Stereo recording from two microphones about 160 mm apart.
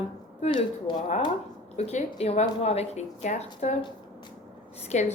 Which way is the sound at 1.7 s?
40° left (ahead or behind).